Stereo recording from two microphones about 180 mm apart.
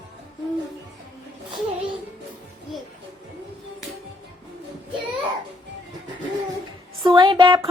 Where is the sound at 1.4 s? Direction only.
25° right (ahead or behind).